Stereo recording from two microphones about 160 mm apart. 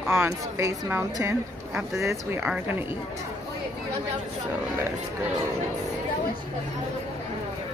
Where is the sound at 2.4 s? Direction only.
5° right (ahead or behind).